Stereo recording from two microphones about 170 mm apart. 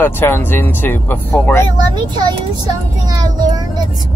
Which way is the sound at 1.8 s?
25° right (ahead or behind).